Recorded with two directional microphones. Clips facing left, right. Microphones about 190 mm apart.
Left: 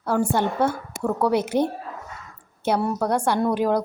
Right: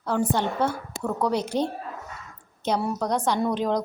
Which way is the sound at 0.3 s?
10° left (ahead or behind).